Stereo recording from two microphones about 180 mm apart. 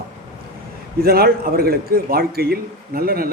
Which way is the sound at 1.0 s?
55° right (ahead or behind).